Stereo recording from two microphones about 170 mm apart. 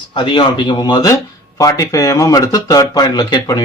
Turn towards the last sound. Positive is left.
turn(degrees=25)  # may be behind; listen again after turning